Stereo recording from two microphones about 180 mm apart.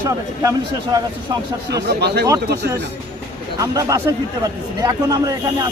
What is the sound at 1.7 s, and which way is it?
Speech, 65° right (ahead or behind).